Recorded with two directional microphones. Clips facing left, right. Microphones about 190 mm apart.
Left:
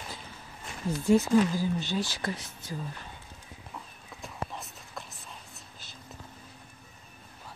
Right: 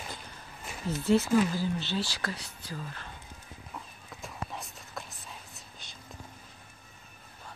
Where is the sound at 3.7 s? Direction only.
Centre (ahead or behind).